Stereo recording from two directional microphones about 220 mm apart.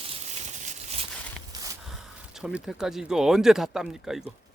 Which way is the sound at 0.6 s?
30° right (ahead or behind).